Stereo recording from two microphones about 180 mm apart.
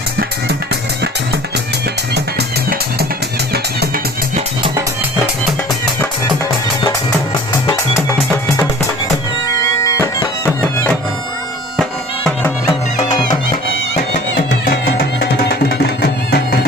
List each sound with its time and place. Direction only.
0.2 s music: 65° right (ahead or behind)
3.5 s music: 60° right (ahead or behind)
9.5 s bagpipes: 20° left (ahead or behind)
13.0 s music: 25° left (ahead or behind)
14.5 s music: 65° left (ahead or behind)